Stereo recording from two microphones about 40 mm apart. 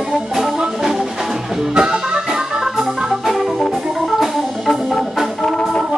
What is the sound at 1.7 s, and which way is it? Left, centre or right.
Music, right.